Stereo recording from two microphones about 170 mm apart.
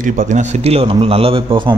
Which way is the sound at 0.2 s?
45° right (ahead or behind).